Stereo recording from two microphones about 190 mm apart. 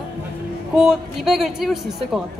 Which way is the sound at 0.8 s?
Centre (ahead or behind).